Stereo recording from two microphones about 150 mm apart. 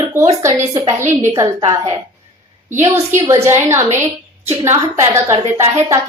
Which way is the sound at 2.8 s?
20° right (ahead or behind).